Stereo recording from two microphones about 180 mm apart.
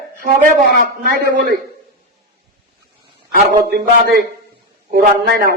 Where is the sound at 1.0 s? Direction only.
60° right (ahead or behind).